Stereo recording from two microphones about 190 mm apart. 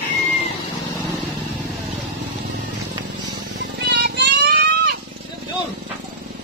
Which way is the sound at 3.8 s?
60° right (ahead or behind).